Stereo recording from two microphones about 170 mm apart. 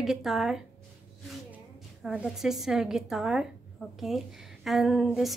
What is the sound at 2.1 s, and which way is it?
A woman's voice, 5° right (ahead or behind).